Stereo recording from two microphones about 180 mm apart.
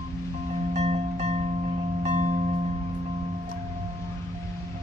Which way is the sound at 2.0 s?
40° right (ahead or behind).